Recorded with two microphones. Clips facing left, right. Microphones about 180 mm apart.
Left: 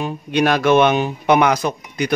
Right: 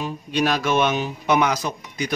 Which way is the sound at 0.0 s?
60° left (ahead or behind).